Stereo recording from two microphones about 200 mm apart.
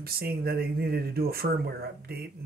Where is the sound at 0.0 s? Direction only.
50° right (ahead or behind).